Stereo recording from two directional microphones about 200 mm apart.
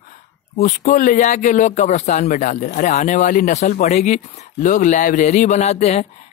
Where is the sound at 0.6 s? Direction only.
40° left (ahead or behind).